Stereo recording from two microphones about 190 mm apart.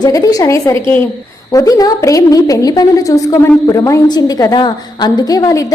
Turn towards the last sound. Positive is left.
turn(degrees=20)  # may be behind; listen again after turning